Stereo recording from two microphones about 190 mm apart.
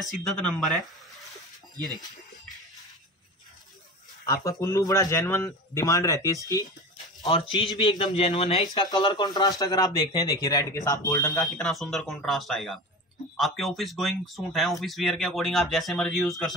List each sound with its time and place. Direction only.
0.2 s speech: centre (ahead or behind)
4.3 s a man's voice: 15° left (ahead or behind)
11.3 s speech: centre (ahead or behind)